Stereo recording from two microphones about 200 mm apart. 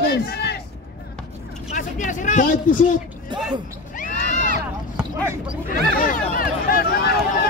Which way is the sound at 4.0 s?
40° left (ahead or behind).